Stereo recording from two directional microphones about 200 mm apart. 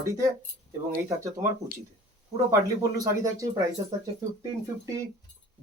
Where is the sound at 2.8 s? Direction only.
15° right (ahead or behind).